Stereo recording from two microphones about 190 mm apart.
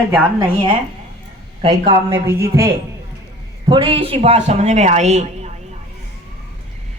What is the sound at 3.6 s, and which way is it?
A man's voice, 30° right (ahead or behind).